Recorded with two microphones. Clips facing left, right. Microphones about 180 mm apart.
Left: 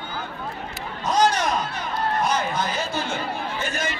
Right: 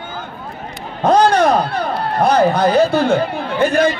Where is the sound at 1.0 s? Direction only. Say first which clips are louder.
Right 9 dB; 55° right (ahead or behind).